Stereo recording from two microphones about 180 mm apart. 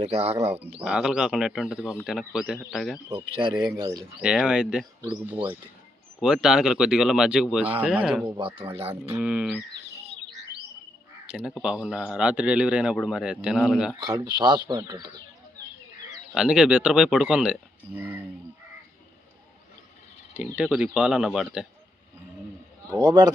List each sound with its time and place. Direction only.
0.0 s speech: 35° right (ahead or behind)
0.9 s a man's voice: 5° right (ahead or behind)
3.3 s speech: 25° right (ahead or behind)
4.2 s a man's voice: 5° right (ahead or behind)
8.4 s speech: 30° right (ahead or behind)
9.1 s speech: 5° right (ahead or behind)
11.3 s a man's voice: 5° right (ahead or behind)
14.0 s speech: 20° right (ahead or behind)
16.3 s a man's voice: 5° right (ahead or behind)
20.3 s a man's voice: 5° right (ahead or behind)
23.0 s speech: 25° right (ahead or behind)